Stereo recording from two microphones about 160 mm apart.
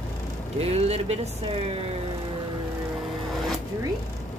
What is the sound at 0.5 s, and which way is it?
Speech, 40° right (ahead or behind).